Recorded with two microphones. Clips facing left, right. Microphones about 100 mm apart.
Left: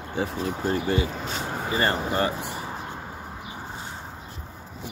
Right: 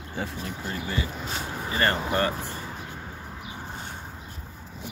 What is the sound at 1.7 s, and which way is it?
Speech, 15° left (ahead or behind).